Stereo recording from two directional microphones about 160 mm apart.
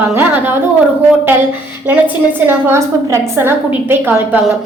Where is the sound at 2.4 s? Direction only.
15° right (ahead or behind).